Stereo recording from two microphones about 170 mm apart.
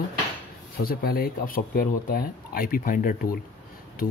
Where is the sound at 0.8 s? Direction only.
60° left (ahead or behind).